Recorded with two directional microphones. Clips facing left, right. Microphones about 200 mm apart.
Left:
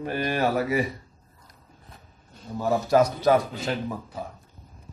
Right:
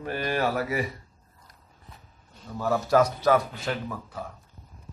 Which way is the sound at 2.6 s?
20° left (ahead or behind).